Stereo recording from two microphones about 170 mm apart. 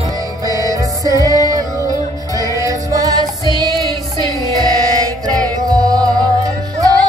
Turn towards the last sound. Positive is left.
turn(degrees=-20)  # may be behind; listen again after turning